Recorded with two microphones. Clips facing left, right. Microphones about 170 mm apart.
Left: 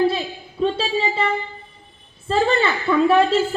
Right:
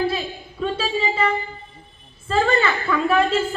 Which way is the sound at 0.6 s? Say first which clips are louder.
Left 3 dB; 30° left (ahead or behind).